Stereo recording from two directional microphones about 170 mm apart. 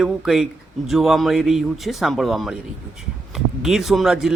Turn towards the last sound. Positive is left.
turn(degrees=-5)  # may be behind; listen again after turning